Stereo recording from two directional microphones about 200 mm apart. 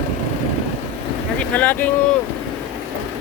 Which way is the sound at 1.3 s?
5° left (ahead or behind).